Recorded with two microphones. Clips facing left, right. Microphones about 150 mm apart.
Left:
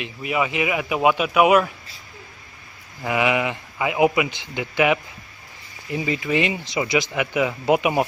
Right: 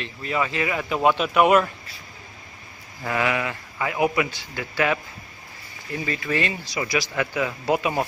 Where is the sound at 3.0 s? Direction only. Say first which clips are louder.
Left 3 dB; 15° left (ahead or behind).